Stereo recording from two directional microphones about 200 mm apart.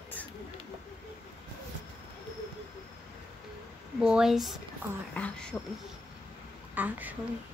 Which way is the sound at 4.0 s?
5° right (ahead or behind).